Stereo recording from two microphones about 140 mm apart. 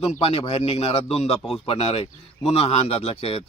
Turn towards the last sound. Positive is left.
turn(degrees=45)  # may be behind; listen again after turning